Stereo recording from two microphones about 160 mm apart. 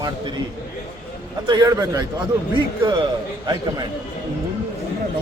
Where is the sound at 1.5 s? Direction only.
25° right (ahead or behind).